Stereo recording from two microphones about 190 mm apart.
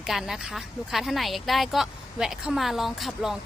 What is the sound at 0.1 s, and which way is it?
A woman's voice, centre (ahead or behind).